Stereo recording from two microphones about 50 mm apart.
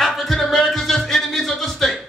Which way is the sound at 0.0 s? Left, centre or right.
Centre.